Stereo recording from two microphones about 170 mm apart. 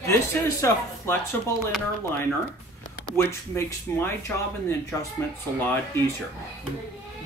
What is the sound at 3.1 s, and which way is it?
Speech, 15° left (ahead or behind).